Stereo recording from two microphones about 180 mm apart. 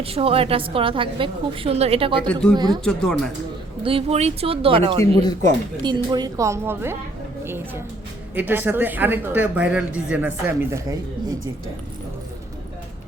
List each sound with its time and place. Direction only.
0.0 s a woman's voice: 35° right (ahead or behind)
2.2 s speech: 5° left (ahead or behind)
2.6 s a woman's voice: 25° right (ahead or behind)
2.8 s speech: 5° left (ahead or behind)
3.8 s a woman's voice: 35° right (ahead or behind); by 6.9 s 15° right (ahead or behind)
7.4 s a sound: 15° right (ahead or behind)
8.4 s speech: 10° right (ahead or behind)